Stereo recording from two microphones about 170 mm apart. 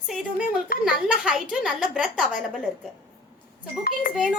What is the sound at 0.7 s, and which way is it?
Speech, 60° left (ahead or behind).